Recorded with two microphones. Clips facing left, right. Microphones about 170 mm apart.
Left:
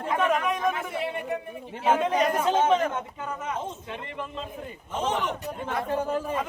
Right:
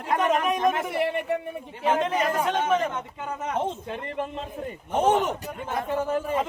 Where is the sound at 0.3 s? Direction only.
20° right (ahead or behind).